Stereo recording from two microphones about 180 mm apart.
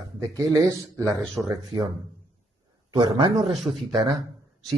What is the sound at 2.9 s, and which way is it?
Speech, 25° right (ahead or behind).